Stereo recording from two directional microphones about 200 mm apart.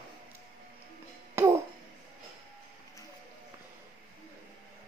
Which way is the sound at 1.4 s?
10° right (ahead or behind).